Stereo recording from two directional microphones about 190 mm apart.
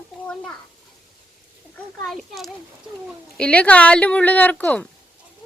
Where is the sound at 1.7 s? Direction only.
Centre (ahead or behind).